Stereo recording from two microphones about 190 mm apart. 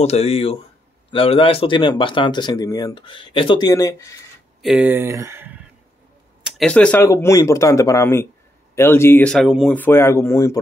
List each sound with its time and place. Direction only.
0.0 s speech: 35° left (ahead or behind); by 4.2 s 15° left (ahead or behind)
4.6 s speech: 5° right (ahead or behind)
6.4 s speech: 5° left (ahead or behind)
9.8 s speech: 10° left (ahead or behind)